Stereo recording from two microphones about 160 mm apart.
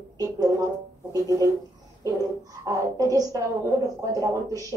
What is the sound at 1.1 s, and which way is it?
Speech, 20° right (ahead or behind).